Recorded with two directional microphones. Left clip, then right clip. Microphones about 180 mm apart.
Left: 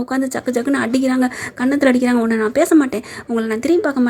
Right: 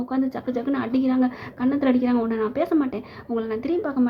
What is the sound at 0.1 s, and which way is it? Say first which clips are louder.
A woman's voice: left 7 dB; 35° left (ahead or behind).